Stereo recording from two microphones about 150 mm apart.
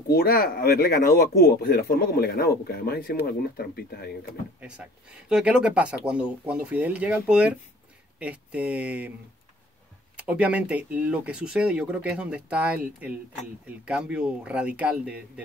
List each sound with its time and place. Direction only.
0.1 s speech: 80° left
4.6 s speech: 5° right (ahead or behind)
10.1 s speech: 10° right (ahead or behind)